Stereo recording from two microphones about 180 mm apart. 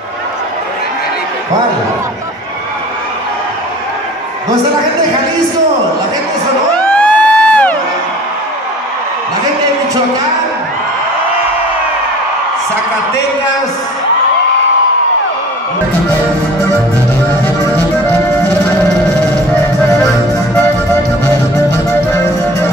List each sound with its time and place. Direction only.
6.7 s crowd: 5° left (ahead or behind)